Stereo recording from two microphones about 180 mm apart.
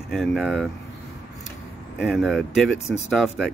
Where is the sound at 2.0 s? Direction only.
Centre (ahead or behind).